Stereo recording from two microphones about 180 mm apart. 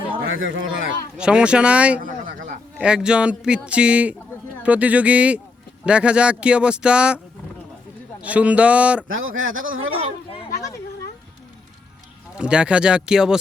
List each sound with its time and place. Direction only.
0.3 s speech: 90° right
1.1 s a man's voice: 5° right (ahead or behind)
8.2 s a man's voice: 5° right (ahead or behind)
9.0 s speech: 90° right
12.4 s speech: 5° right (ahead or behind)